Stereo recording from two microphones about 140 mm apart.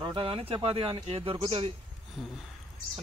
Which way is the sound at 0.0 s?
35° right (ahead or behind).